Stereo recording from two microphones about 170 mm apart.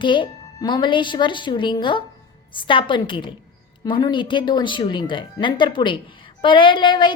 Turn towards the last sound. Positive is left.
turn(degrees=25)  # may be behind; listen again after turning